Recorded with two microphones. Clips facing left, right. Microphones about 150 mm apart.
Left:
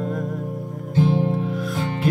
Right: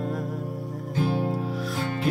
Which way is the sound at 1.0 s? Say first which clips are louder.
Left 6 dB; 20° left (ahead or behind).